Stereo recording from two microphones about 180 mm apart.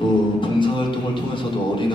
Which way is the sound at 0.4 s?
25° left (ahead or behind).